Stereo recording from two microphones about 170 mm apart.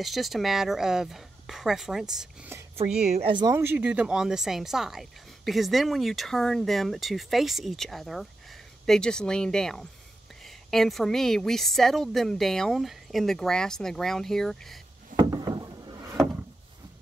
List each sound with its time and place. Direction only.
0.0 s a woman's voice: centre (ahead or behind)
3.2 s speech: 30° right (ahead or behind)
3.5 s a woman's voice: 10° right (ahead or behind)
15.1 s a sound: 20° right (ahead or behind)